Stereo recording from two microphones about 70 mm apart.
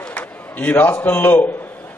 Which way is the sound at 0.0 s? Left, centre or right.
Centre.